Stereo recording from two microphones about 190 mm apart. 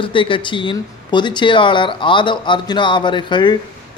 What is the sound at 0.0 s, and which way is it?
Speech, 25° left (ahead or behind).